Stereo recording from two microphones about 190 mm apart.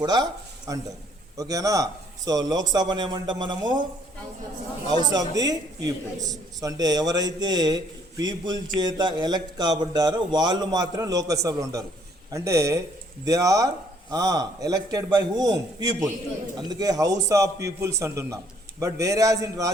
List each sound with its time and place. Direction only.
0.0 s speech: 20° right (ahead or behind)
5.1 s a man's voice: 20° right (ahead or behind)